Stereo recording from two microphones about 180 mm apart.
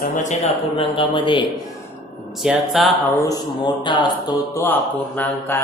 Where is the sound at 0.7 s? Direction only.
30° left (ahead or behind).